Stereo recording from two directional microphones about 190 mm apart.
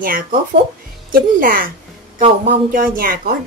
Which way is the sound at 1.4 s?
50° right (ahead or behind).